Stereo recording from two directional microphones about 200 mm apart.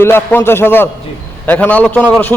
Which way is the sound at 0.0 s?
10° left (ahead or behind).